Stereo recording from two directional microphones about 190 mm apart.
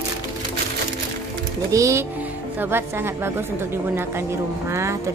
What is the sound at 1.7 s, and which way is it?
Speech, 15° right (ahead or behind).